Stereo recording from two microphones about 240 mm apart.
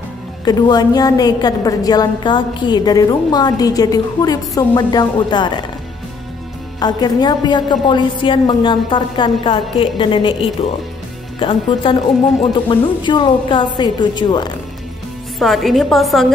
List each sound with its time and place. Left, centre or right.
0.5 s a woman's voice: centre
6.8 s a woman's voice: centre
15.3 s a woman's voice: centre